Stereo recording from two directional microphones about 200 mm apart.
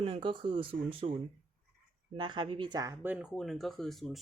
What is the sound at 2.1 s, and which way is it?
Speech, 25° right (ahead or behind).